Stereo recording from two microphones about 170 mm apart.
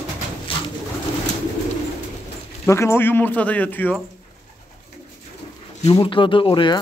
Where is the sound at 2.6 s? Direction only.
15° left (ahead or behind).